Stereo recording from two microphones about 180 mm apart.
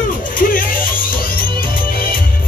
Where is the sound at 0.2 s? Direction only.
50° left (ahead or behind).